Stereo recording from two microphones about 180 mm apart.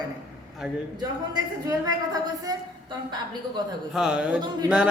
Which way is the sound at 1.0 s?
20° right (ahead or behind).